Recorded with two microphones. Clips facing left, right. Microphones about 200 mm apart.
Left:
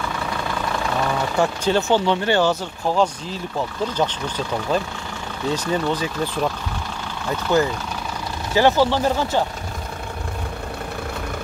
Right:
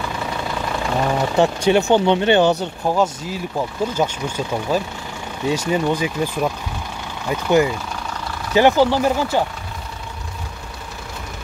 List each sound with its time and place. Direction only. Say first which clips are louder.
1.0 s speech: right 5 dB; 20° right (ahead or behind)
3.0 s speech: right 1 dB; 10° right (ahead or behind)